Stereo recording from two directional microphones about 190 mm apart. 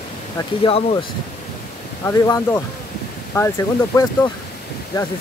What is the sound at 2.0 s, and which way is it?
Speech, 15° left (ahead or behind).